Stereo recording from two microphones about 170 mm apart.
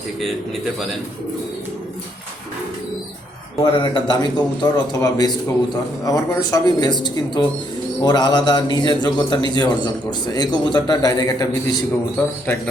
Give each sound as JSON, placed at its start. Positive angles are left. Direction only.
{"t": 3.6, "sound": "a man's voice", "side_deg": 25}